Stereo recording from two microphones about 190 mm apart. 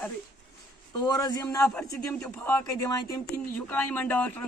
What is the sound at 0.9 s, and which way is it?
Speech, 20° left (ahead or behind).